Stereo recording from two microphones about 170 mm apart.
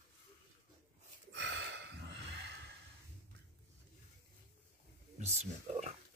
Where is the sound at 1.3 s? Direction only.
90° right.